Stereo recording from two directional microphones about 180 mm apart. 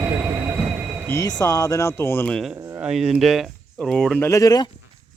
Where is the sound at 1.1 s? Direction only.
20° left (ahead or behind); by 2.6 s centre (ahead or behind).